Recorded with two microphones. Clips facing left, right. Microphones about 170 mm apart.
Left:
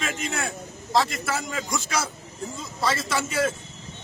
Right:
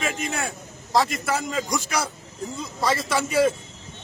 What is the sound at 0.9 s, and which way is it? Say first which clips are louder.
Speech: right 1 dB; 15° right (ahead or behind).